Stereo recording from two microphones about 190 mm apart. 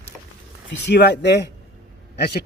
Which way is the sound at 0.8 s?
60° left (ahead or behind).